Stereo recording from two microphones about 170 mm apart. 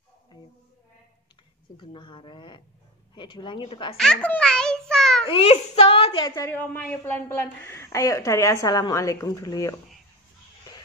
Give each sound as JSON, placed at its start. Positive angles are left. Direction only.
{"t": 1.8, "sound": "speech", "side_deg": 30}
{"t": 3.9, "sound": "a child's voice", "side_deg": 5}
{"t": 5.2, "sound": "a child's voice", "side_deg": 35}
{"t": 6.3, "sound": "a woman's voice", "side_deg": 15}